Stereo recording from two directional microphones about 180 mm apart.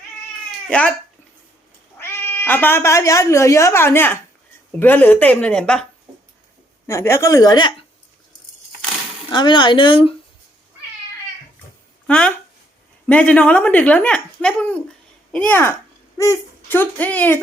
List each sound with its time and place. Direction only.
0.7 s speech: 5° left (ahead or behind)
2.0 s speech: 15° left (ahead or behind)
6.8 s speech: 15° left (ahead or behind)
9.3 s speech: 25° left (ahead or behind)
12.0 s speech: 5° left (ahead or behind)